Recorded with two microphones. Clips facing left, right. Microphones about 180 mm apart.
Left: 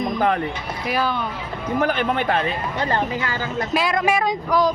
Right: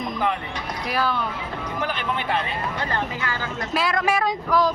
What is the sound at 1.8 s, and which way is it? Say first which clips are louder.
Speech: left 7 dB; 50° left (ahead or behind).